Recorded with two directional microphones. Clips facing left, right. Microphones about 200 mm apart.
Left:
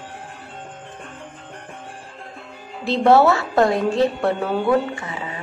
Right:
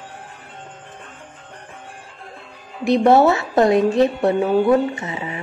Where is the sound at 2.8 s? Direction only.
15° right (ahead or behind).